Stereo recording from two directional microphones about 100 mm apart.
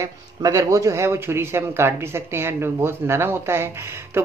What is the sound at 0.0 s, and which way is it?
Speech, 35° right (ahead or behind).